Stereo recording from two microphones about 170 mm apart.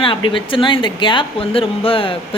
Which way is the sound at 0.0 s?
30° left (ahead or behind).